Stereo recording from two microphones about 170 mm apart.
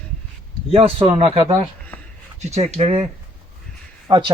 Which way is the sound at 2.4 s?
40° right (ahead or behind).